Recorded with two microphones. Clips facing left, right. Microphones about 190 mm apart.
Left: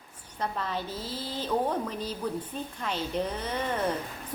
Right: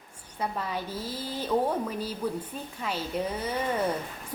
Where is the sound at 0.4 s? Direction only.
10° right (ahead or behind).